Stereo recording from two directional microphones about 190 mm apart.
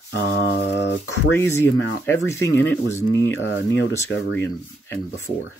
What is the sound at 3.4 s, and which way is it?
Speech, 85° left.